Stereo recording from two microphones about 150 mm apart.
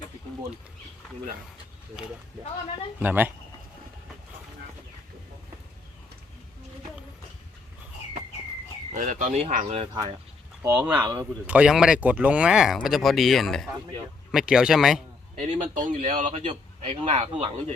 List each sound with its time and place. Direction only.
3.0 s speech: 10° right (ahead or behind)
8.9 s speech: 55° right (ahead or behind)
9.8 s speech: 30° right (ahead or behind)
10.6 s speech: 15° right (ahead or behind)
10.9 s speech: 25° right (ahead or behind)
11.4 s speech: 10° right (ahead or behind)
15.4 s speech: 50° right (ahead or behind)
16.5 s speech: 40° right (ahead or behind)